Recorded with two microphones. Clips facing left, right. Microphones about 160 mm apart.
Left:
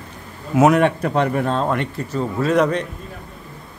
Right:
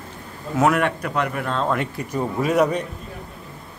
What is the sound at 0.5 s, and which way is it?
Speech, 20° left (ahead or behind).